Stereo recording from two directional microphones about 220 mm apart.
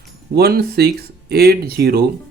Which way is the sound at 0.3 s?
45° right (ahead or behind).